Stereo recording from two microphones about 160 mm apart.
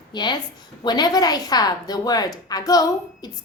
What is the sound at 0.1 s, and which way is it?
Speech, 25° left (ahead or behind).